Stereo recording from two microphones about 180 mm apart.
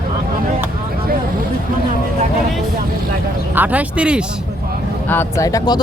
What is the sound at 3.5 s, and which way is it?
Speech, 10° right (ahead or behind).